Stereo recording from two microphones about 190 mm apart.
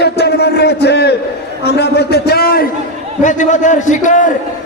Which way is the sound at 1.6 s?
60° left (ahead or behind).